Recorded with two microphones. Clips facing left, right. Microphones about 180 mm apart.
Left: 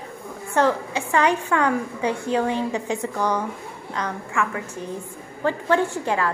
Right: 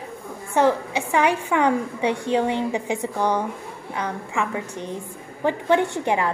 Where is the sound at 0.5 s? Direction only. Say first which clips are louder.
Right 1 dB; 15° right (ahead or behind).